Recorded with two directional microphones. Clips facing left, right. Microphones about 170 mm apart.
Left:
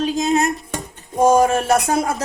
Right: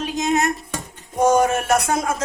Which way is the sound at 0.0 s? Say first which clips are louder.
Left 3 dB; 30° left (ahead or behind).